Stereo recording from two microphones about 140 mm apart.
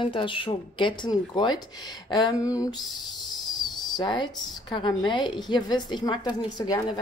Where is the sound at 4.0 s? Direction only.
35° left (ahead or behind).